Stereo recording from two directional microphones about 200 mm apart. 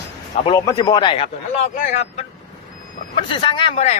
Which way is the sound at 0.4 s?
20° left (ahead or behind).